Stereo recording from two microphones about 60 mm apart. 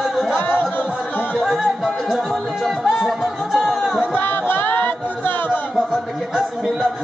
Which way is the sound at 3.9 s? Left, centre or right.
Left.